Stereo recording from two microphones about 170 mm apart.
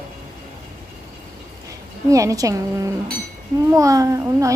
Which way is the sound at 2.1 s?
20° right (ahead or behind).